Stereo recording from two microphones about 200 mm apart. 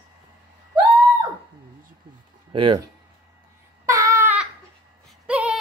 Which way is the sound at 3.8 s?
15° right (ahead or behind).